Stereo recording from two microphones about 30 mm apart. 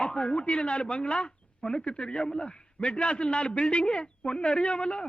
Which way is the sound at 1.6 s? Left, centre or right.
Left.